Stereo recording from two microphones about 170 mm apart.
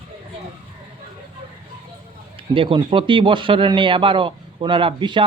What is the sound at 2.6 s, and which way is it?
Speech, 30° right (ahead or behind).